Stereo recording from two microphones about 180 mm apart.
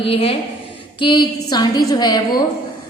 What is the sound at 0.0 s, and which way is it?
A woman's voice, 30° left (ahead or behind).